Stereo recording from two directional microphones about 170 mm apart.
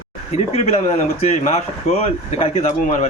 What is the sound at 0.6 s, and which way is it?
Speech, 40° left (ahead or behind).